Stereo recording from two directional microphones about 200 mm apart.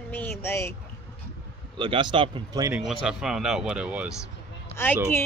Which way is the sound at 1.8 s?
25° right (ahead or behind).